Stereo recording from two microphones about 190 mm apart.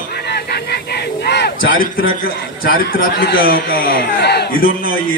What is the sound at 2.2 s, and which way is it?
A man's voice, 50° left (ahead or behind).